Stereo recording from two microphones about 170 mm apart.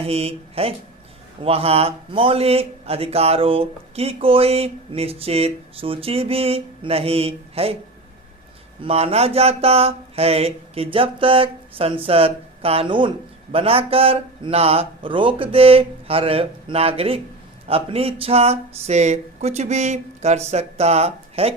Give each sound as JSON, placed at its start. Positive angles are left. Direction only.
{"t": 0.0, "sound": "a man's voice", "side_deg": -35}
{"t": 8.8, "sound": "a man's voice", "side_deg": -35}